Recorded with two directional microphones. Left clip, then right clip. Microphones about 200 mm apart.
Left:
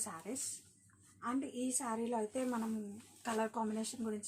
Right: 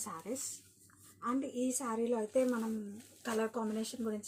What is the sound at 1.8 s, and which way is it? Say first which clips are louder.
Speech: right 2 dB; 30° left (ahead or behind).